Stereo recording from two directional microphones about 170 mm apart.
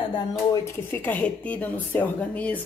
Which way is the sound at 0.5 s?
15° left (ahead or behind).